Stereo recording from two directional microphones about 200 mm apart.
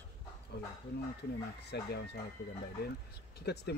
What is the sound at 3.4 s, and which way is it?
Speech, 55° left (ahead or behind).